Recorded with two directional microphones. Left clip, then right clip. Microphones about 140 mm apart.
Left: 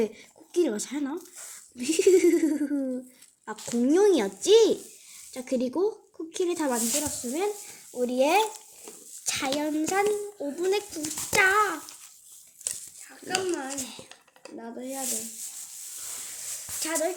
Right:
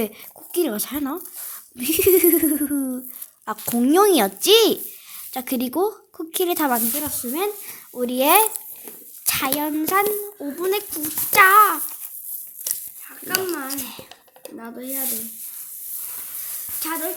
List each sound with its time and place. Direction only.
0.0 s speech: 20° right (ahead or behind)
3.7 s speech: 35° right (ahead or behind)
9.2 s a sound: 30° right (ahead or behind)
9.6 s speech: 25° right (ahead or behind)
13.3 s a child's voice: 55° right (ahead or behind)
13.7 s dishes: 30° right (ahead or behind)
16.8 s speech: 15° right (ahead or behind)